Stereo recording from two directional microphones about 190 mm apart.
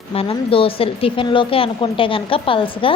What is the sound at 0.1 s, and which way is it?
A woman's voice, 30° left (ahead or behind).